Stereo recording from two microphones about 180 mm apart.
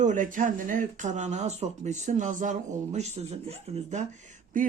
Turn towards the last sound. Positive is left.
turn(degrees=-45)  # may be behind; listen again after turning